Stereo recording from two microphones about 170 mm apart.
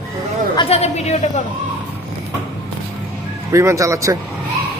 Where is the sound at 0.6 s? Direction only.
35° left (ahead or behind).